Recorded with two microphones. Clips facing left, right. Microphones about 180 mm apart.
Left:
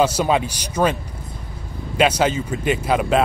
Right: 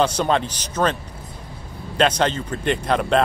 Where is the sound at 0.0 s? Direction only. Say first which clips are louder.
Left 2 dB; 10° left (ahead or behind).